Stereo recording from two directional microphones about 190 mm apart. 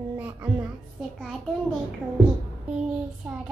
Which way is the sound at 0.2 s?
10° right (ahead or behind).